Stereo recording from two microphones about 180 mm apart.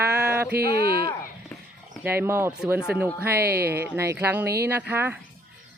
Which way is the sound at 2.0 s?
10° right (ahead or behind).